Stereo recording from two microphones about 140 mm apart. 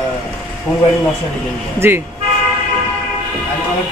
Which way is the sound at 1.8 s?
15° right (ahead or behind).